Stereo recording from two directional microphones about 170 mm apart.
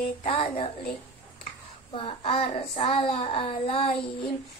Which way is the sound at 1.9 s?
35° left (ahead or behind).